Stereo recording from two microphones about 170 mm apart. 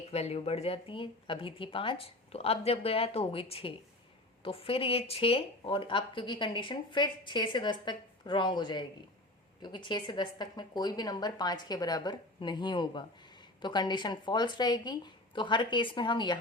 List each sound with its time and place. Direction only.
0.1 s speech: 40° left (ahead or behind)